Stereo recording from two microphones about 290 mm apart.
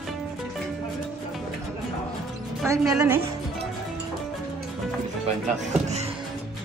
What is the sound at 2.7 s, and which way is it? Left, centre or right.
Speech, centre.